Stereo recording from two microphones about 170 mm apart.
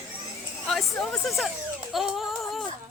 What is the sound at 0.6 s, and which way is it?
Speech, 5° left (ahead or behind).